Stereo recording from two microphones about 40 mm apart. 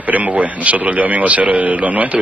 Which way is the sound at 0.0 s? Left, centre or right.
Right.